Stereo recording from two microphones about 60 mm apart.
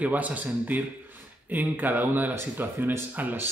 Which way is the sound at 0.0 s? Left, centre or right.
Right.